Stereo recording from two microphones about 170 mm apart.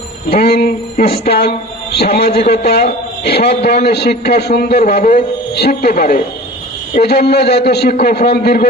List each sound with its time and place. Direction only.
0.3 s a sound: 65° left (ahead or behind)
2.0 s a man's voice: 65° left (ahead or behind)
7.0 s a man's voice: 70° left (ahead or behind)